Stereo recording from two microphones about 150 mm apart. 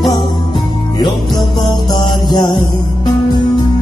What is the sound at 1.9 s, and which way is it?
Music, 30° left (ahead or behind).